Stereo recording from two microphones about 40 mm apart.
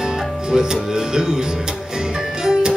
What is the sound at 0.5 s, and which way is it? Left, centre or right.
Speech, centre.